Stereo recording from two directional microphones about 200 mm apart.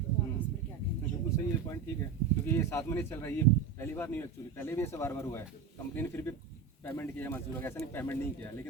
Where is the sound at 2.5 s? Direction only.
15° left (ahead or behind).